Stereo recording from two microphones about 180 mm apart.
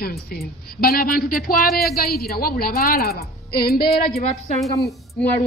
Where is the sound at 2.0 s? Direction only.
60° left (ahead or behind).